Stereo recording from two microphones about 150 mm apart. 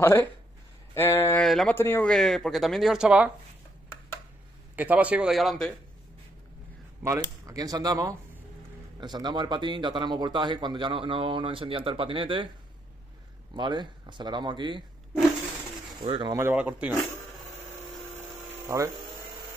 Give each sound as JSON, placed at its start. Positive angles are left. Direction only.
{"t": 0.0, "sound": "a sound", "side_deg": 15}
{"t": 1.4, "sound": "speech", "side_deg": 0}
{"t": 1.8, "sound": "speech", "side_deg": 15}
{"t": 4.7, "sound": "speech", "side_deg": -10}
{"t": 7.0, "sound": "speech", "side_deg": -20}
{"t": 13.6, "sound": "speech", "side_deg": -30}
{"t": 16.0, "sound": "speech", "side_deg": -30}
{"t": 16.3, "sound": "speech", "side_deg": -15}
{"t": 18.7, "sound": "speech", "side_deg": -20}